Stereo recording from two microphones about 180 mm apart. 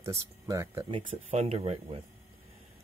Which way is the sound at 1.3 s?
35° right (ahead or behind).